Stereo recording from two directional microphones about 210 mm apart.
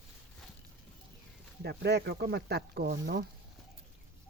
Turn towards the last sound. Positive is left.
turn(degrees=-50)  # may be behind; listen again after turning